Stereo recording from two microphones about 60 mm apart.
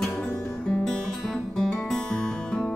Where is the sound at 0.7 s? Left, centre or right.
Centre.